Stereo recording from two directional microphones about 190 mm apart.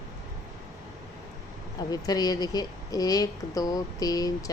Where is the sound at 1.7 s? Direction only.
20° left (ahead or behind).